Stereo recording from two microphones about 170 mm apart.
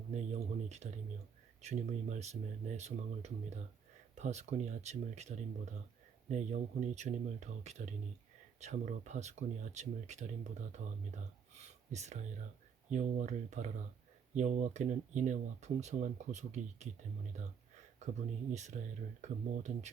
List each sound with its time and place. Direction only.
0.1 s speech: 45° right (ahead or behind)
18.0 s speech: 40° right (ahead or behind)